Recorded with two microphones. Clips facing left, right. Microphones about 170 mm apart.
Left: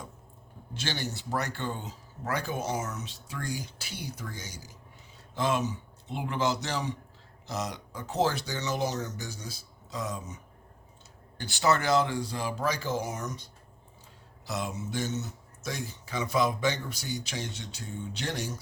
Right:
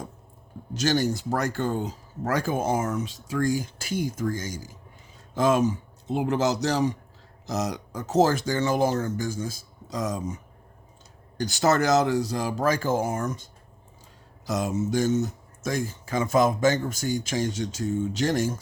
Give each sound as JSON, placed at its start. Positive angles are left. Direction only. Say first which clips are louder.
{"t": 0.7, "sound": "speech", "louder": "right 11 dB", "side_deg": -45}
{"t": 11.3, "sound": "speech", "louder": "right 5 dB", "side_deg": -40}